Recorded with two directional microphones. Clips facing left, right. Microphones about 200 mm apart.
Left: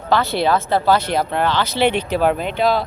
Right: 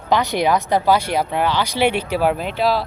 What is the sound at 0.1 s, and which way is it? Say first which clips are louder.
Speech: even; 15° right (ahead or behind).